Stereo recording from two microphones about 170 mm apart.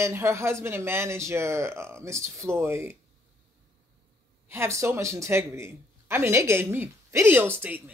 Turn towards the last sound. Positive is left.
turn(degrees=-10)  # may be behind; listen again after turning